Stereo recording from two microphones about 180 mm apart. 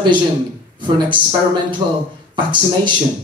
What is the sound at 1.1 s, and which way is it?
Speech, 25° right (ahead or behind).